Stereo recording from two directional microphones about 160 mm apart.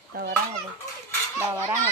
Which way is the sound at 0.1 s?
65° right (ahead or behind).